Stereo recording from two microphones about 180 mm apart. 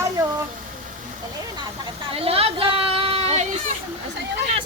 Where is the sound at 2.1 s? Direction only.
35° right (ahead or behind).